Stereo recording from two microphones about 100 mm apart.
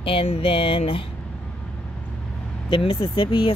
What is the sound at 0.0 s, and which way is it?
Speech, 65° left (ahead or behind).